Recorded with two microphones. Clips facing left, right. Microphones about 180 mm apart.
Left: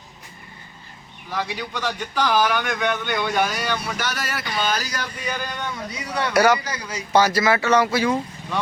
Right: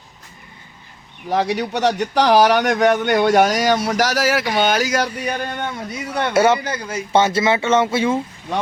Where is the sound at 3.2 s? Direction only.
80° right; by 6.3 s 50° right (ahead or behind).